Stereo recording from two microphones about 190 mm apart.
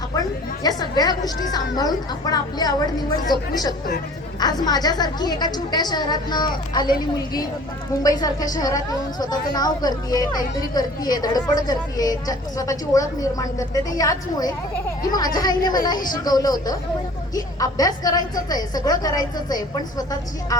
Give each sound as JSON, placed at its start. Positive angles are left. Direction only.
{"t": 0.2, "sound": "a woman's voice", "side_deg": 20}